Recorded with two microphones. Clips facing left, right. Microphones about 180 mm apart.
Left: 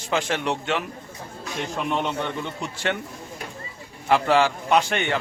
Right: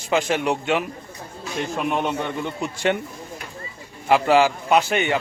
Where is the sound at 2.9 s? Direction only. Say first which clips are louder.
Right 4 dB; 20° right (ahead or behind).